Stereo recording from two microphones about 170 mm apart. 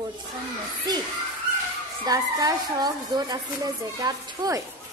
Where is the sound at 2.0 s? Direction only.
20° right (ahead or behind).